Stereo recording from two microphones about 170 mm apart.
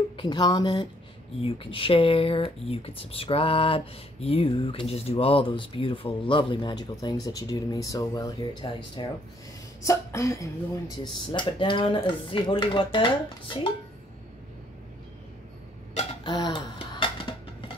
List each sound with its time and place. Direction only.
0.2 s speech: 25° left (ahead or behind)
11.3 s speech: 30° left (ahead or behind)
16.3 s music: 25° left (ahead or behind)